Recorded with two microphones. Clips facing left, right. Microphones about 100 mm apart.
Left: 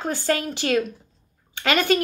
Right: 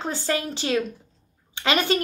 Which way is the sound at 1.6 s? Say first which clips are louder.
Left 2 dB; 50° left (ahead or behind).